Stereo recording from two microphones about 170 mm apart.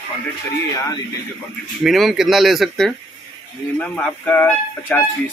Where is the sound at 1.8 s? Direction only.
Centre (ahead or behind).